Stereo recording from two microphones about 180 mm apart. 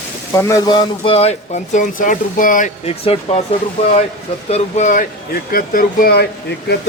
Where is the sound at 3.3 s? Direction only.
30° left (ahead or behind).